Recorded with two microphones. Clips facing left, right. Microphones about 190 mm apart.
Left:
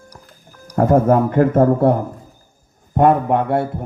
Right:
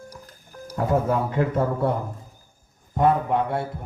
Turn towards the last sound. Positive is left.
turn(degrees=60)  # may be behind; listen again after turning